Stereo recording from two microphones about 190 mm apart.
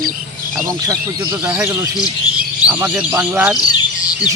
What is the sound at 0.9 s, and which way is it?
Speech, 20° right (ahead or behind).